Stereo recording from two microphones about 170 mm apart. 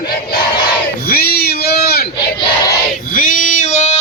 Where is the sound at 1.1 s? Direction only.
65° left (ahead or behind).